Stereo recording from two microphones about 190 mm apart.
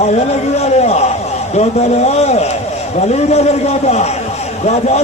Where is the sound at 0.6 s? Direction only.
35° left (ahead or behind).